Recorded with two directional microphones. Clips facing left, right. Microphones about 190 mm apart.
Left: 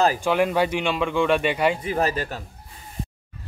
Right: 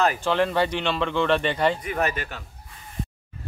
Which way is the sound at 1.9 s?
30° left (ahead or behind).